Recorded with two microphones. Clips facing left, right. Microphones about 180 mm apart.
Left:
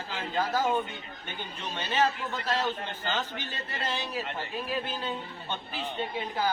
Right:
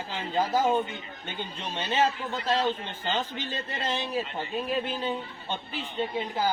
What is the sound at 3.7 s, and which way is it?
A man's voice, 20° right (ahead or behind).